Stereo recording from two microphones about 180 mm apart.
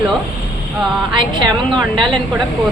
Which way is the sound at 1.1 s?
25° right (ahead or behind).